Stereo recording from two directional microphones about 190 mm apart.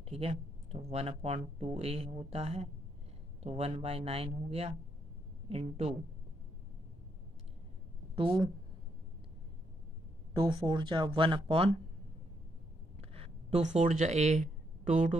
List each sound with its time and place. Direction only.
0.0 s speech: 30° right (ahead or behind)
10.3 s speech: 25° right (ahead or behind)
13.1 s speech: 35° right (ahead or behind)